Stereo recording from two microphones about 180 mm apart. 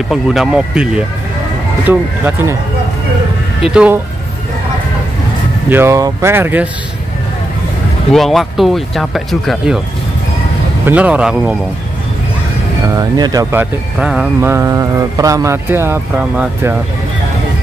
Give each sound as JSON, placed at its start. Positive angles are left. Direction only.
{"t": 0.1, "sound": "speech", "side_deg": 0}
{"t": 3.7, "sound": "speech", "side_deg": -5}
{"t": 5.7, "sound": "speech", "side_deg": -15}
{"t": 8.1, "sound": "speech", "side_deg": 0}
{"t": 10.9, "sound": "speech", "side_deg": -5}
{"t": 12.9, "sound": "speech", "side_deg": -20}
{"t": 13.9, "sound": "speech", "side_deg": -5}